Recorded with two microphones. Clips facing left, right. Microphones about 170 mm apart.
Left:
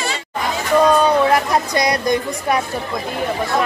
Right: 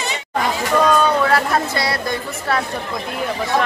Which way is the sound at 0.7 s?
10° left (ahead or behind).